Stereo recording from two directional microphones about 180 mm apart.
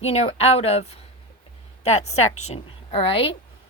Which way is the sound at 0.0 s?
35° left (ahead or behind).